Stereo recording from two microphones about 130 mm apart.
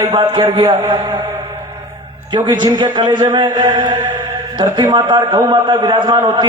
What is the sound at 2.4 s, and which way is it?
A man's voice, 35° right (ahead or behind).